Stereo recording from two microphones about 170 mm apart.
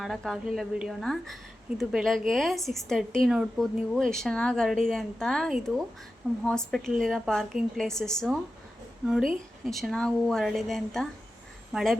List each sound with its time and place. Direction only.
0.0 s speech: centre (ahead or behind)